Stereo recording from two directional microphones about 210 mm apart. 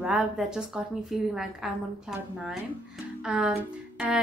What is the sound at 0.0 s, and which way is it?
A woman's voice, 5° right (ahead or behind).